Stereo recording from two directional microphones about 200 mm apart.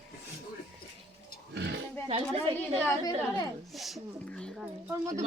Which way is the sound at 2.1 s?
30° right (ahead or behind).